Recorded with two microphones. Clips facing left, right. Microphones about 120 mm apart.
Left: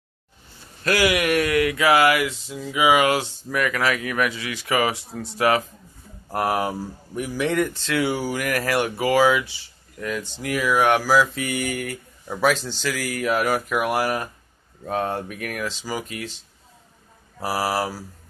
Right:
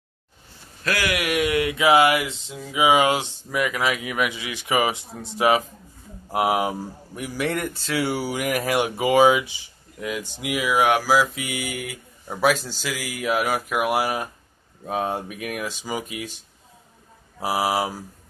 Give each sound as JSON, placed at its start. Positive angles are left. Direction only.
{"t": 0.8, "sound": "speech", "side_deg": 5}
{"t": 1.2, "sound": "speech", "side_deg": -10}
{"t": 1.5, "sound": "a sound", "side_deg": -20}
{"t": 3.4, "sound": "speech", "side_deg": -15}
{"t": 8.4, "sound": "speech", "side_deg": -20}
{"t": 17.4, "sound": "speech", "side_deg": -15}